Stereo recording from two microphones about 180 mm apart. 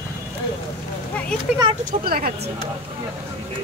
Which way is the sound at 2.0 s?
55° right (ahead or behind).